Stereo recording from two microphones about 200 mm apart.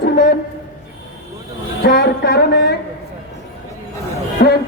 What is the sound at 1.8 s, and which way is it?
Speech, 55° left (ahead or behind).